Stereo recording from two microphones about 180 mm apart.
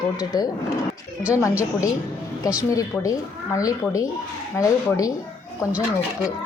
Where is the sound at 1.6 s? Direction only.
20° left (ahead or behind).